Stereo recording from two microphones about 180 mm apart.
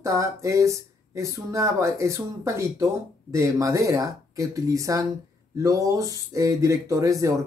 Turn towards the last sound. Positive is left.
turn(degrees=-15)  # may be behind; listen again after turning